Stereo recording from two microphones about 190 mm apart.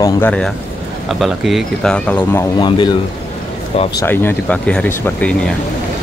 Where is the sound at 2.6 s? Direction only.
25° left (ahead or behind).